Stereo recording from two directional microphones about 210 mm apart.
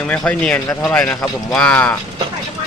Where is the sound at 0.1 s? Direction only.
5° left (ahead or behind).